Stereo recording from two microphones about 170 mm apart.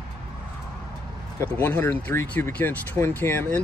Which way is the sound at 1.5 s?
10° left (ahead or behind).